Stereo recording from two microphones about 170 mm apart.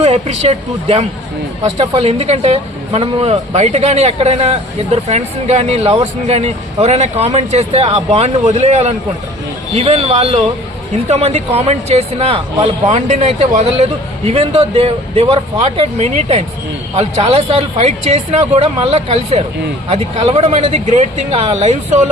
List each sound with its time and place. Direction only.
0.0 s speech: 40° right (ahead or behind)